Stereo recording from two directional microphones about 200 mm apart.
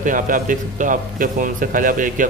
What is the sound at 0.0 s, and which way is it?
A man's voice, 40° right (ahead or behind).